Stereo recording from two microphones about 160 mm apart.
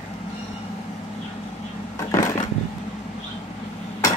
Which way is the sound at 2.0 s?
20° left (ahead or behind).